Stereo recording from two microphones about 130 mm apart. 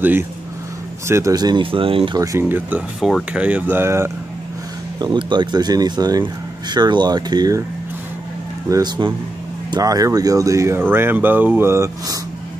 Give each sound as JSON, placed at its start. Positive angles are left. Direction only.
{"t": 1.0, "sound": "speech", "side_deg": -20}
{"t": 2.1, "sound": "speech", "side_deg": -25}
{"t": 3.0, "sound": "speech", "side_deg": 0}
{"t": 3.3, "sound": "speech", "side_deg": -10}
{"t": 4.9, "sound": "speech", "side_deg": -35}
{"t": 8.6, "sound": "speech", "side_deg": -30}